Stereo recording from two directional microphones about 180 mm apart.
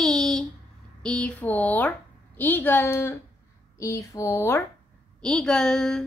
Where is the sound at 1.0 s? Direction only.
5° left (ahead or behind).